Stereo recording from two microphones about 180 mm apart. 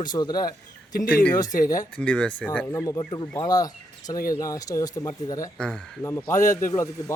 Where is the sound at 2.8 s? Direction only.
20° left (ahead or behind).